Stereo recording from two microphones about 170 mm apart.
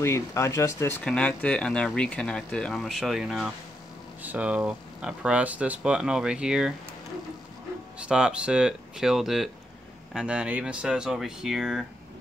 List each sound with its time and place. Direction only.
0.0 s speech: 15° left (ahead or behind); by 6.7 s 5° right (ahead or behind)
8.0 s speech: 5° right (ahead or behind)